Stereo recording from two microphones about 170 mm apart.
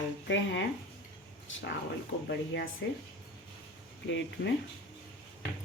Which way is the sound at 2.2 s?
80° left.